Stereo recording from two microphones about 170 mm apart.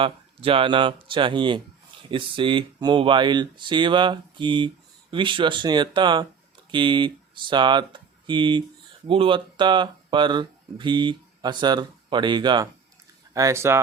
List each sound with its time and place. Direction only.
0.0 s speech: 30° right (ahead or behind); by 13.8 s 15° right (ahead or behind)